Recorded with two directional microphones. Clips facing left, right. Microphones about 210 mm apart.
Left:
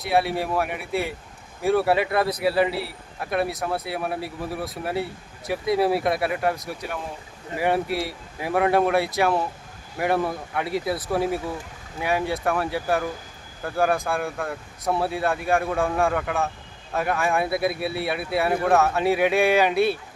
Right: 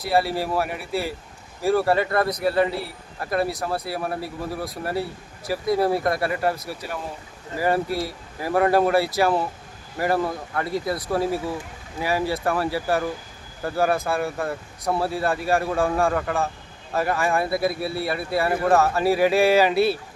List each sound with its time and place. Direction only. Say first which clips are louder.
0.0 s a man's voice: right 1 dB; centre (ahead or behind)
8.0 s a man's voice: right 1 dB; centre (ahead or behind)